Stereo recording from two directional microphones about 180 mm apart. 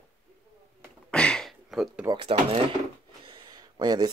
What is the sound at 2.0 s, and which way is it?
Speech, 30° right (ahead or behind).